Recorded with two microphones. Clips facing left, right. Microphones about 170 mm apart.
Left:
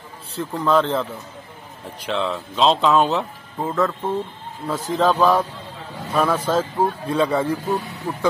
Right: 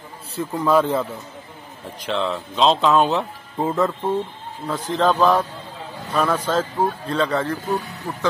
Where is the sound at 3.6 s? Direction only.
20° right (ahead or behind).